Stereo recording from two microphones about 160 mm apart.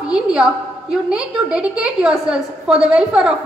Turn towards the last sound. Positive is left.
turn(degrees=-5)  # may be behind; listen again after turning